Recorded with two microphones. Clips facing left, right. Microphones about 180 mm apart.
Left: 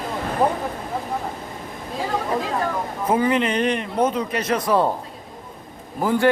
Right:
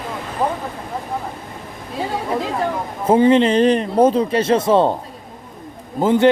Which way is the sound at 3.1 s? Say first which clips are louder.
Right 7 dB; 30° right (ahead or behind).